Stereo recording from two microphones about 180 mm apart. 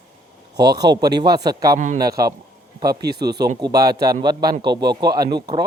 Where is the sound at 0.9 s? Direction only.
20° right (ahead or behind).